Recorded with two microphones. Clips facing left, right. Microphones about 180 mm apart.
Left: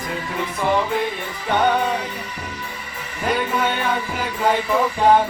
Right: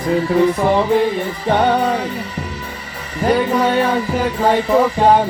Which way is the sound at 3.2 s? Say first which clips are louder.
Right 6 dB; 35° right (ahead or behind).